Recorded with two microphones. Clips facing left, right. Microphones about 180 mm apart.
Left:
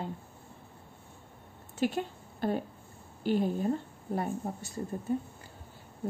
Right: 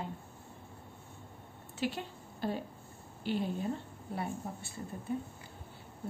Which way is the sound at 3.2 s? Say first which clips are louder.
Left 6 dB; 45° left (ahead or behind).